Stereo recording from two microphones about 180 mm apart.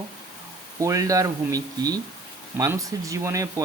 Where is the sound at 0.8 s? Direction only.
15° right (ahead or behind).